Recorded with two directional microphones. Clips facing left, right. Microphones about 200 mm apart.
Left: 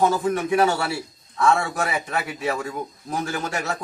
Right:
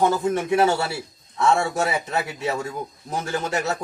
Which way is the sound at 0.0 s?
20° right (ahead or behind).